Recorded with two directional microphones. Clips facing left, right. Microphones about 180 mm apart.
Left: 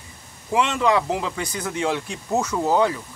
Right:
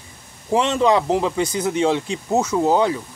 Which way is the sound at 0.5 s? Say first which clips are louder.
Right 3 dB; 25° right (ahead or behind).